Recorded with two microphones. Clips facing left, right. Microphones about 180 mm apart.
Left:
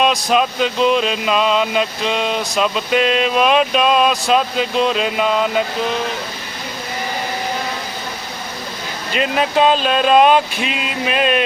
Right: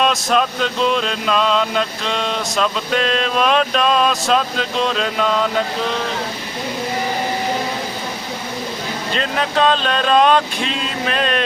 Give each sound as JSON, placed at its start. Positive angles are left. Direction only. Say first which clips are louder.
{"t": 0.0, "sound": "vehicle", "louder": "left 1 dB", "side_deg": 0}
{"t": 9.1, "sound": "vehicle", "louder": "left 4 dB", "side_deg": 10}